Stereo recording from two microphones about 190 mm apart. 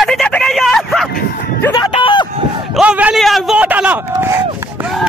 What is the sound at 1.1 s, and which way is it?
Bow-wow, 50° left (ahead or behind).